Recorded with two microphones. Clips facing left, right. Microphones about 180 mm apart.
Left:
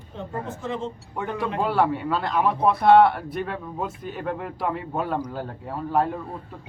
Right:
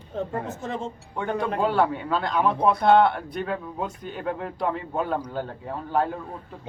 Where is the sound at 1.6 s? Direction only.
5° left (ahead or behind).